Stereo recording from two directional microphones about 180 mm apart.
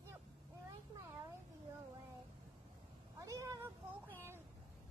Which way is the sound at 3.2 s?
20° right (ahead or behind).